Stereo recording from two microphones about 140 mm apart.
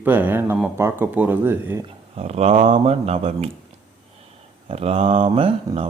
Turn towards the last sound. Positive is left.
turn(degrees=-40)  # may be behind; listen again after turning